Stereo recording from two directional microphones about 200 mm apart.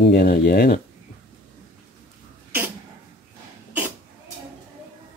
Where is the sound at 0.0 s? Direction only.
50° left (ahead or behind).